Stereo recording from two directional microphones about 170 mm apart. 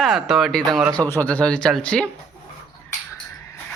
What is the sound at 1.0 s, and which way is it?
A man's voice, 10° left (ahead or behind).